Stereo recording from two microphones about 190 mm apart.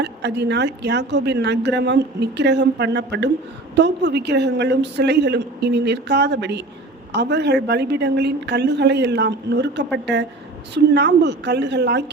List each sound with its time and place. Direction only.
0.0 s a woman's voice: 65° right (ahead or behind)
10.9 s a woman's voice: 65° right (ahead or behind)